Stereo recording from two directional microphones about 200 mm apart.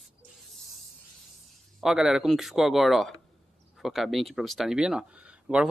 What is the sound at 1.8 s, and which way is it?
Speech, centre (ahead or behind).